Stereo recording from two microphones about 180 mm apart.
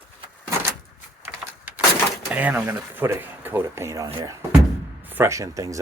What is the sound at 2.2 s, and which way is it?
Speech, 10° right (ahead or behind).